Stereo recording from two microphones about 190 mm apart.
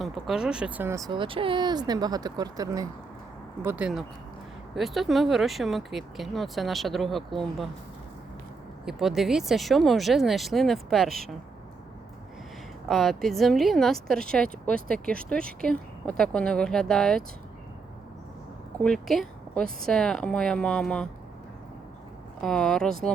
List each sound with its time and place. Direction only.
0.0 s speech: centre (ahead or behind); by 2.8 s 20° right (ahead or behind)
3.6 s a woman's voice: 10° right (ahead or behind)
8.8 s a woman's voice: centre (ahead or behind)
12.9 s a woman's voice: centre (ahead or behind)
18.8 s a woman's voice: centre (ahead or behind)
22.4 s a woman's voice: 5° left (ahead or behind)